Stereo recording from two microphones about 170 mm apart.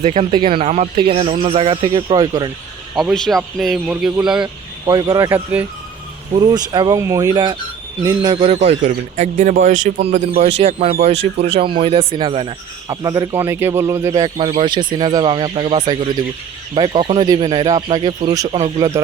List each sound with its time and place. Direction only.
0.0 s speech: 40° right (ahead or behind)
0.3 s speech: 30° right (ahead or behind)
2.9 s speech: centre (ahead or behind)
4.9 s a man's voice: 20° right (ahead or behind)